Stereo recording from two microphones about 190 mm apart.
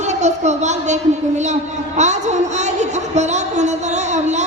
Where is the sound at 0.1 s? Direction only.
35° right (ahead or behind).